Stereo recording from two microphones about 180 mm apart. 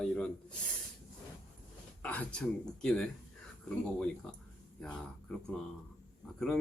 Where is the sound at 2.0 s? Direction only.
10° left (ahead or behind).